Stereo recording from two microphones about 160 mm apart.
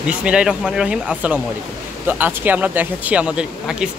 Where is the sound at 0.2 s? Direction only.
5° right (ahead or behind).